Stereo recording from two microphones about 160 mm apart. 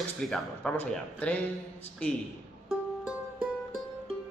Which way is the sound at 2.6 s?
5° right (ahead or behind).